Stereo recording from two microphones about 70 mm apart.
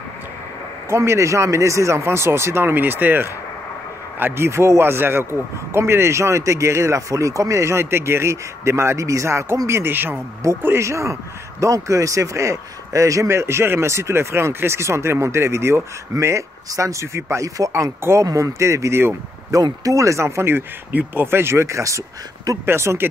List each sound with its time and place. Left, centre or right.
0.8 s a man's voice: right
19.5 s a man's voice: right